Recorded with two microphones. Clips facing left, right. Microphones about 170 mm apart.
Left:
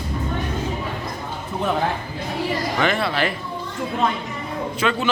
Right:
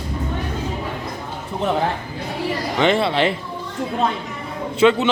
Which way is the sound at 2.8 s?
25° right (ahead or behind).